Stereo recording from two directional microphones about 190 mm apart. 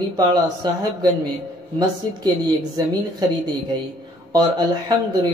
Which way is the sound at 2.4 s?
20° right (ahead or behind).